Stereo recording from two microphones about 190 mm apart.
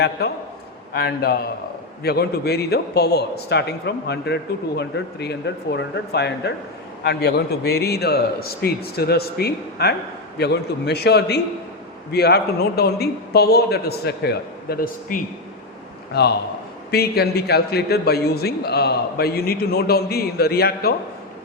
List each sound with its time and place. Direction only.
0.9 s a man's voice: 55° left (ahead or behind)
16.9 s a man's voice: 55° left (ahead or behind)